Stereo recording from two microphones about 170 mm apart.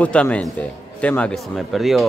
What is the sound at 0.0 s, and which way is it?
Speech, 5° left (ahead or behind).